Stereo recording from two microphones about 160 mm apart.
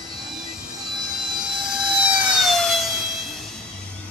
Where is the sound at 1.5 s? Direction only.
5° right (ahead or behind).